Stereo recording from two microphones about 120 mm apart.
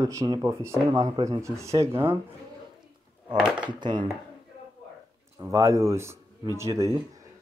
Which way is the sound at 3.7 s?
40° right (ahead or behind).